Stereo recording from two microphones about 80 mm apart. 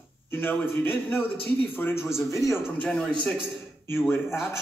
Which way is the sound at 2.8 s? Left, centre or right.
Centre.